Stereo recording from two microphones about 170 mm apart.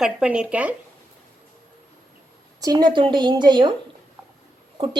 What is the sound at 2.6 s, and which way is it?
A woman's voice, 25° right (ahead or behind).